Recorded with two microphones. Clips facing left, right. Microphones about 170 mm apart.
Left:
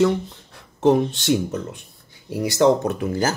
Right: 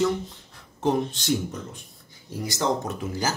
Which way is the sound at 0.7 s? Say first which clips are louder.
Left 7 dB; 70° left (ahead or behind).